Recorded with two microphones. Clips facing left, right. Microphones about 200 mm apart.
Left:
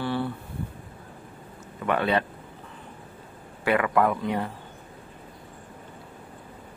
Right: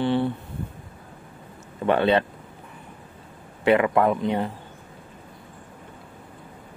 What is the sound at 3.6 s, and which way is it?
Speech, 25° right (ahead or behind).